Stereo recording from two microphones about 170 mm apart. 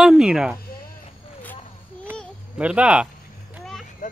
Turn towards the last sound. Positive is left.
turn(degrees=0)  # may be behind; listen again after turning